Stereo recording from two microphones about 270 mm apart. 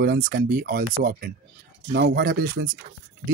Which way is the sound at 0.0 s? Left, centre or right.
Right.